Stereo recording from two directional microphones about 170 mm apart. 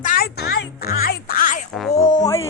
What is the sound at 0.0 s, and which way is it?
Music, 60° left (ahead or behind).